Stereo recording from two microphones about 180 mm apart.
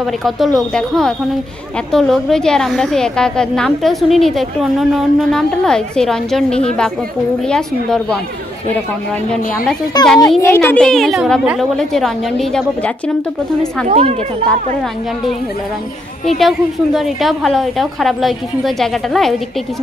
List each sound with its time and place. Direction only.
0.0 s a woman's voice: centre (ahead or behind)
10.0 s a woman's voice: 5° left (ahead or behind)
13.8 s speech: 35° right (ahead or behind)
16.3 s a woman's voice: centre (ahead or behind)